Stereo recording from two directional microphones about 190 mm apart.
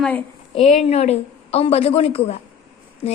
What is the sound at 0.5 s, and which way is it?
A woman's voice, 35° left (ahead or behind).